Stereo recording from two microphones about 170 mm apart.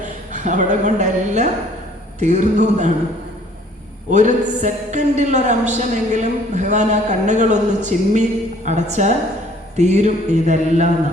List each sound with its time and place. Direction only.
0.0 s a woman's voice: 45° right (ahead or behind)
4.1 s a man's voice: 45° right (ahead or behind)